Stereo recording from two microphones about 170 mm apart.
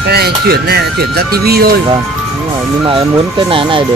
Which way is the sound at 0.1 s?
70° right (ahead or behind).